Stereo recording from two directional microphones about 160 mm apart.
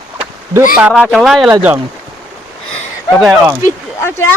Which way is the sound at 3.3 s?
15° right (ahead or behind).